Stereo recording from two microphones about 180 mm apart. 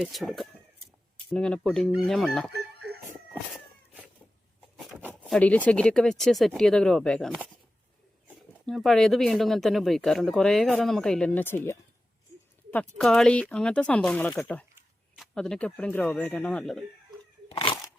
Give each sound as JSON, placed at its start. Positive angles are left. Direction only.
{"t": 0.0, "sound": "speech", "side_deg": 0}
{"t": 3.2, "sound": "cat", "side_deg": -5}
{"t": 4.8, "sound": "a sound", "side_deg": -5}
{"t": 5.3, "sound": "speech", "side_deg": 10}
{"t": 13.0, "sound": "speech", "side_deg": 0}
{"t": 17.5, "sound": "crunch", "side_deg": 30}